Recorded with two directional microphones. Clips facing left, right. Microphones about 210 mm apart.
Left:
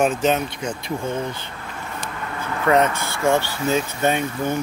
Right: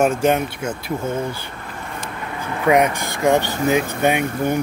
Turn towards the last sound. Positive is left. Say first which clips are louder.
# right 3 dB
turn(degrees=-15)  # may be behind; listen again after turning